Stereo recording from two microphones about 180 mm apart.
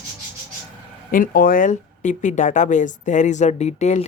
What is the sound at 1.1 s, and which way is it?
Speech, 50° left (ahead or behind).